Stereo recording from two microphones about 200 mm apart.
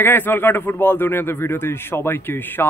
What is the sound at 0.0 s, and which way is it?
Speech, 10° left (ahead or behind).